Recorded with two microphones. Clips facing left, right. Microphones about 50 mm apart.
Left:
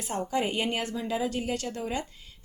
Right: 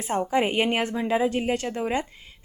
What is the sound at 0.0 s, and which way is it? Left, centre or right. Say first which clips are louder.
Speech: right 6 dB; right.